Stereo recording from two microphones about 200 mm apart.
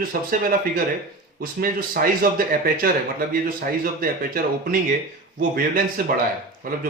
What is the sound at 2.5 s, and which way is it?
A man's voice, 45° right (ahead or behind).